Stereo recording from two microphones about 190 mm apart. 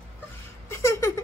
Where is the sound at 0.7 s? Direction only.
15° left (ahead or behind).